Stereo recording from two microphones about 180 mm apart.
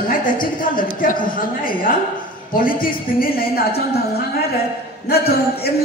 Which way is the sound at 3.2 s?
55° left (ahead or behind).